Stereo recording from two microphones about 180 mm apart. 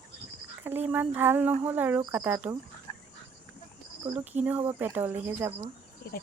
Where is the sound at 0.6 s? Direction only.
10° right (ahead or behind).